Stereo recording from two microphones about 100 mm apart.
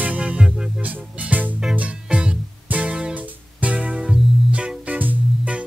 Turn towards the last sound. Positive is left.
turn(degrees=-15)  # may be behind; listen again after turning